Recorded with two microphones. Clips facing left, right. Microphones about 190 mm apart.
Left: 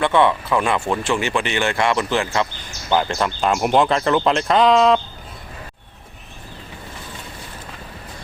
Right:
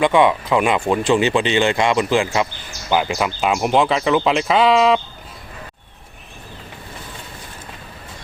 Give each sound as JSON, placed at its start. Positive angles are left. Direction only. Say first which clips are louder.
{"t": 0.0, "sound": "speech", "louder": "right 2 dB", "side_deg": -15}